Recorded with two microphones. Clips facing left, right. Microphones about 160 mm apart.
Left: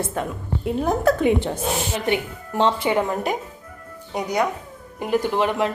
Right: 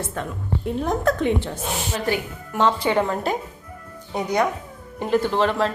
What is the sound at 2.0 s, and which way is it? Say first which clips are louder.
Speech: left 2 dB; 25° left (ahead or behind).